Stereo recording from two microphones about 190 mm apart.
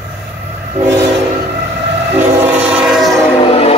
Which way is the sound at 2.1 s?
10° right (ahead or behind).